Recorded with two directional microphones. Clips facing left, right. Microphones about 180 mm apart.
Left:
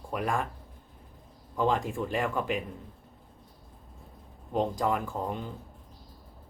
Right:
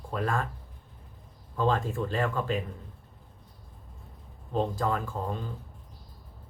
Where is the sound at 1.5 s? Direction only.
15° left (ahead or behind).